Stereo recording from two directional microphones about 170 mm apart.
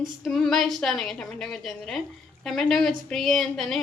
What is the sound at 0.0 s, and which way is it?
A woman's voice, centre (ahead or behind).